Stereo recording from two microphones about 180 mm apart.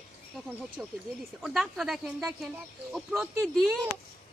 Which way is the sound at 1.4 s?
Centre (ahead or behind).